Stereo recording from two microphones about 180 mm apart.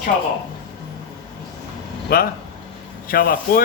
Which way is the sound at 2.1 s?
55° left (ahead or behind).